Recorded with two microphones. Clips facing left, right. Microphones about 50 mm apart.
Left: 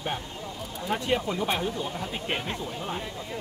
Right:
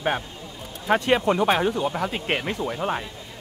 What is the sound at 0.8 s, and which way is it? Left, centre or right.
Speech, right.